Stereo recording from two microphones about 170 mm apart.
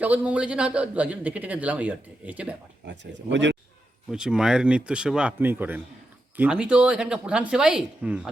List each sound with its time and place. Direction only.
0.0 s a man's voice: 10° right (ahead or behind)
2.8 s speech: 90° right
4.1 s speech: 5° right (ahead or behind)